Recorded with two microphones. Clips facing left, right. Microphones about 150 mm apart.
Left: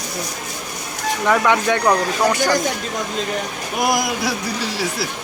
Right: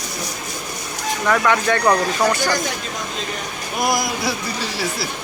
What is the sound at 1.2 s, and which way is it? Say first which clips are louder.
Speech: left 1 dB; 15° left (ahead or behind).